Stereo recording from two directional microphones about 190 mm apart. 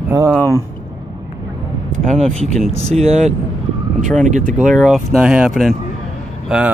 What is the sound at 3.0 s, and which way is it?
Speech, 35° right (ahead or behind).